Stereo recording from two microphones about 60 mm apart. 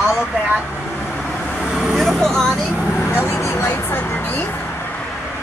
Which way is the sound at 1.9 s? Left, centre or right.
Centre.